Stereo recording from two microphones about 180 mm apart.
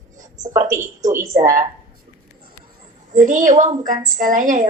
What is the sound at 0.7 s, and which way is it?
Speech, 15° right (ahead or behind).